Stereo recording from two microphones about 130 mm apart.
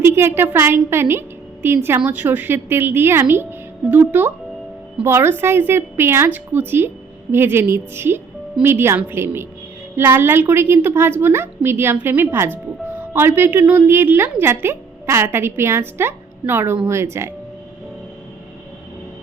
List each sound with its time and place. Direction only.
0.0 s a woman's voice: 20° right (ahead or behind)